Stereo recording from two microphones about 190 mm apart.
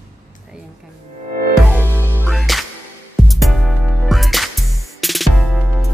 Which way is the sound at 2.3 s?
Centre (ahead or behind).